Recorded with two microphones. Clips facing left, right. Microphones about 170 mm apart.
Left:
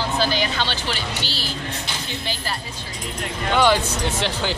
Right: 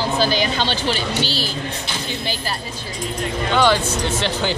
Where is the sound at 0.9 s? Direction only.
15° left (ahead or behind).